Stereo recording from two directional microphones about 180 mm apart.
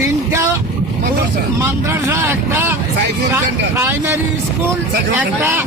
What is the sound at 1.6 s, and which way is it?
Speech, 15° right (ahead or behind).